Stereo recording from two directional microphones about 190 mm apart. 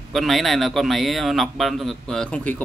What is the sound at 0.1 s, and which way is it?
A man's voice, centre (ahead or behind).